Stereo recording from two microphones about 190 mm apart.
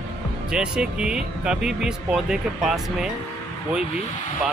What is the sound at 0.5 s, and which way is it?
Speech, 5° right (ahead or behind).